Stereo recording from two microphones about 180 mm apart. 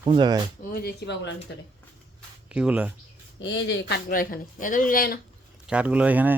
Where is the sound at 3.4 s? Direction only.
80° left.